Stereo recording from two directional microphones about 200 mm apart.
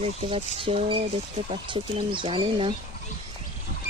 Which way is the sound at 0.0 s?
30° right (ahead or behind).